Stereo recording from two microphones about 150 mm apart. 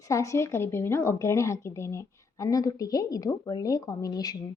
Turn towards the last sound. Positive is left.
turn(degrees=25)  # may be behind; listen again after turning